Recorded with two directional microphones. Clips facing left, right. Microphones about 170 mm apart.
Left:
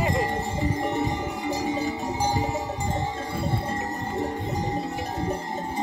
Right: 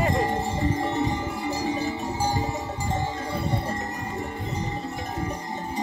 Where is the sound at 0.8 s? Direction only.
20° left (ahead or behind).